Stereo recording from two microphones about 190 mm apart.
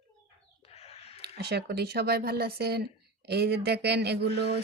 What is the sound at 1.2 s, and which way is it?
Speech, 60° right (ahead or behind).